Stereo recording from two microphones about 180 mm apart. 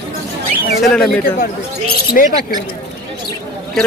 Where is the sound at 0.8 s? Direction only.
5° left (ahead or behind).